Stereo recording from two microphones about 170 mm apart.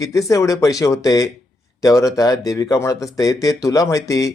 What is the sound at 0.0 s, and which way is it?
Speech, 20° left (ahead or behind).